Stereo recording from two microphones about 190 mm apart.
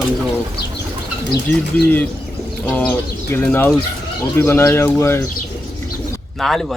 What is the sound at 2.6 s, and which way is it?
Speech, 10° left (ahead or behind).